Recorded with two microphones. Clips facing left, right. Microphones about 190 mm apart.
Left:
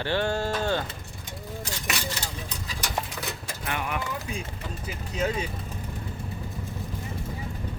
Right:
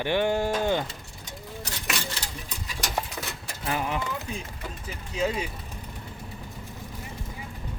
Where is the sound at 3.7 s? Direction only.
30° right (ahead or behind).